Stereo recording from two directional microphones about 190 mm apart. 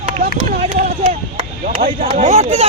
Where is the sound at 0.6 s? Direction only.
30° right (ahead or behind).